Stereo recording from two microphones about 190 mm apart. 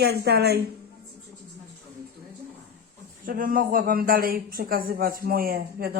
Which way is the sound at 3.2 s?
45° right (ahead or behind).